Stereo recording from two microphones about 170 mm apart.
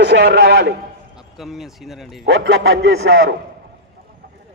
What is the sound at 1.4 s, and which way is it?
Speech, centre (ahead or behind).